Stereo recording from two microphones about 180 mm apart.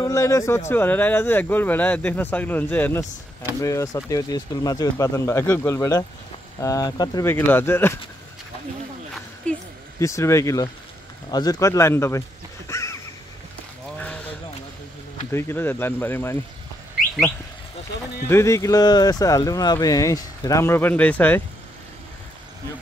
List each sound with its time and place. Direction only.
0.0 s speech: 15° left (ahead or behind)
9.5 s speech: 5° left (ahead or behind)
9.9 s speech: 15° left (ahead or behind)
12.6 s a sound: 15° left (ahead or behind)
15.3 s speech: 10° left (ahead or behind)
18.3 s speech: 15° left (ahead or behind)